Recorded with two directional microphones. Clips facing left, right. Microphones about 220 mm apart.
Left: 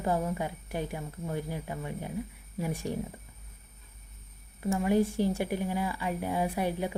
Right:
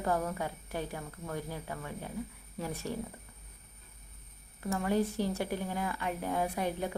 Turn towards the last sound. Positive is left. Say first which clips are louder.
# left 3 dB
turn(degrees=10)  # may be behind; listen again after turning